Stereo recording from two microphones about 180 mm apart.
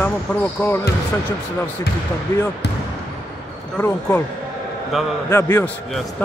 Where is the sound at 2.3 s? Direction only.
15° left (ahead or behind).